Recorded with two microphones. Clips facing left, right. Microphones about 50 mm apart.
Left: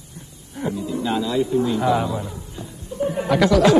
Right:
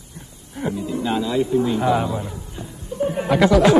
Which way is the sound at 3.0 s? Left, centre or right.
Centre.